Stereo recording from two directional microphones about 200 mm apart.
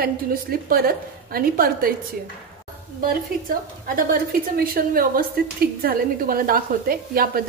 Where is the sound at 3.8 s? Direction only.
45° right (ahead or behind).